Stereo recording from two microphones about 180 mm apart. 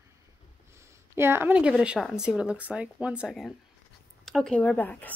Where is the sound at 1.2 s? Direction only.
15° right (ahead or behind).